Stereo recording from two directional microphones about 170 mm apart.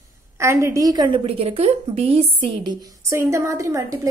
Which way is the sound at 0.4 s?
15° right (ahead or behind).